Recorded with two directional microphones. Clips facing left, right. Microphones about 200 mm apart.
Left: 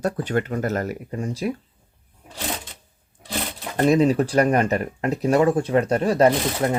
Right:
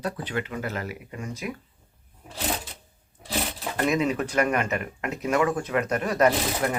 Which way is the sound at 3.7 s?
30° left (ahead or behind).